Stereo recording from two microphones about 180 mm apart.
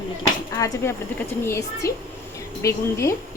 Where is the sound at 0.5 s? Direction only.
15° left (ahead or behind).